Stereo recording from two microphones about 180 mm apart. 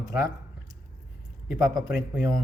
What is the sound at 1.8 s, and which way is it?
Speech, 10° right (ahead or behind).